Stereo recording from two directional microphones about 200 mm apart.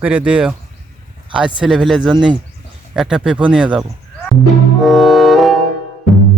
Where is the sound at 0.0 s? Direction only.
5° right (ahead or behind).